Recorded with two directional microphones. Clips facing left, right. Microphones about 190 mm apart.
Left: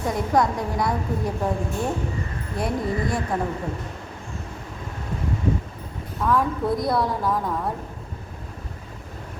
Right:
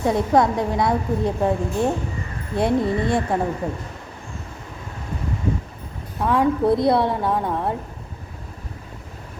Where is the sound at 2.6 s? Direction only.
25° right (ahead or behind).